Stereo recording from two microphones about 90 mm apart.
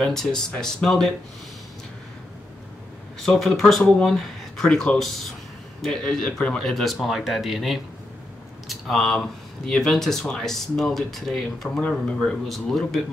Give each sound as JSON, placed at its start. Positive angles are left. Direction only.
{"t": 0.0, "sound": "speech", "side_deg": 5}
{"t": 3.2, "sound": "speech", "side_deg": 5}
{"t": 8.6, "sound": "a sound", "side_deg": 0}
{"t": 9.7, "sound": "speech", "side_deg": 5}